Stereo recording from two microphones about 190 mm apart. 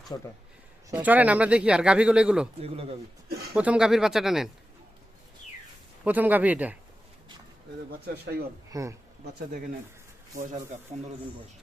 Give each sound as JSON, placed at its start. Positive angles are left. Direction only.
{"t": 0.1, "sound": "speech", "side_deg": 20}
{"t": 0.9, "sound": "speech", "side_deg": -10}
{"t": 2.6, "sound": "speech", "side_deg": -30}
{"t": 3.5, "sound": "speech", "side_deg": -5}
{"t": 6.1, "sound": "speech", "side_deg": -10}
{"t": 7.9, "sound": "speech", "side_deg": -55}
{"t": 8.7, "sound": "speech", "side_deg": -15}